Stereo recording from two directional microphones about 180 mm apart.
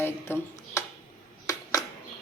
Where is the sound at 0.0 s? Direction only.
15° left (ahead or behind).